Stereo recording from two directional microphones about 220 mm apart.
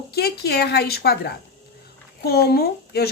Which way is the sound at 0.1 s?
45° left (ahead or behind).